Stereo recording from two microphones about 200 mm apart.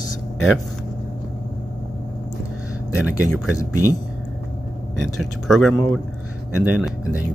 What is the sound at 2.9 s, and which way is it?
Speech, 5° right (ahead or behind).